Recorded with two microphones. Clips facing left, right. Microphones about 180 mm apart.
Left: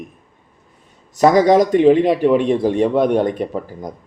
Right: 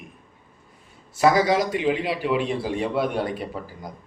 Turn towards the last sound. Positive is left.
turn(degrees=45)  # may be behind; listen again after turning